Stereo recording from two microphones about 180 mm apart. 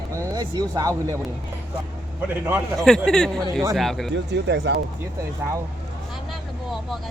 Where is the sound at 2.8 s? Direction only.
5° left (ahead or behind).